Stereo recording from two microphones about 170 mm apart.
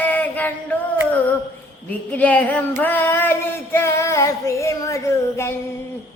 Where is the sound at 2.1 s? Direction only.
10° left (ahead or behind).